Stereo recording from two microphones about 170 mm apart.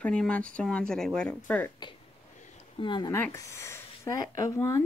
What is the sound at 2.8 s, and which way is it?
Speech, 25° left (ahead or behind).